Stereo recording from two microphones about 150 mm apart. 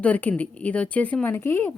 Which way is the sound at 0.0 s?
10° left (ahead or behind).